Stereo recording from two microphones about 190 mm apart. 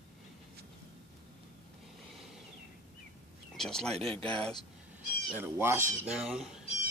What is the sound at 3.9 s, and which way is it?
Speech, 30° right (ahead or behind).